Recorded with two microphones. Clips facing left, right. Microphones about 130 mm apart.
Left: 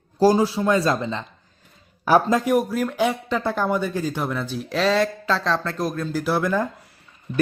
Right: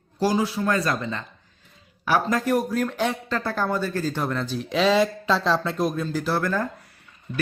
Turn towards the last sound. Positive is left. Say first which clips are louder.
# left 6 dB
turn(degrees=5)  # may be behind; listen again after turning